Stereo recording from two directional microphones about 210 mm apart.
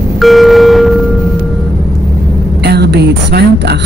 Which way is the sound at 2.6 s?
50° right (ahead or behind).